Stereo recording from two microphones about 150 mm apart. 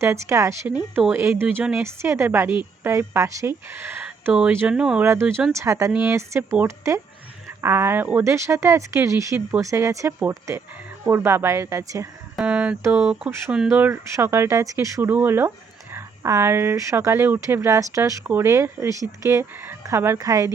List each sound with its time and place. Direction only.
0.0 s speech: 20° right (ahead or behind)
5.5 s speech: 20° right (ahead or behind)
12.4 s speech: 10° right (ahead or behind)